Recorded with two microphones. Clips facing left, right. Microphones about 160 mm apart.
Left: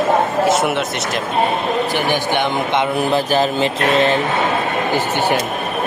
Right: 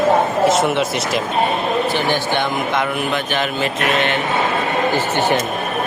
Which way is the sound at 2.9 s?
35° left (ahead or behind).